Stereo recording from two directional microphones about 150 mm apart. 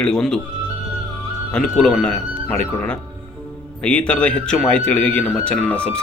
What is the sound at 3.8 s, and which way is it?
A man's voice, 10° left (ahead or behind).